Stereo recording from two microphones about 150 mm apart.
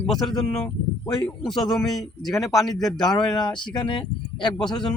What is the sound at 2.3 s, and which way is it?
Speech, 20° left (ahead or behind).